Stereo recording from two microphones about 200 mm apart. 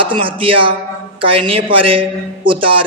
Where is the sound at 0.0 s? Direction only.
25° right (ahead or behind).